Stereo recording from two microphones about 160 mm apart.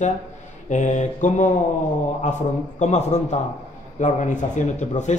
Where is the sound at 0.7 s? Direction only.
50° left (ahead or behind).